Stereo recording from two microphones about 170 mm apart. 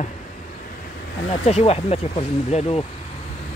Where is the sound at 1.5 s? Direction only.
35° left (ahead or behind).